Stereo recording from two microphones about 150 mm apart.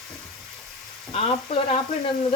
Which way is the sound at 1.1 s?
40° left (ahead or behind).